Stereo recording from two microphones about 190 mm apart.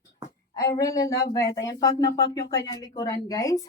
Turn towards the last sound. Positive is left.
turn(degrees=20)  # may be behind; listen again after turning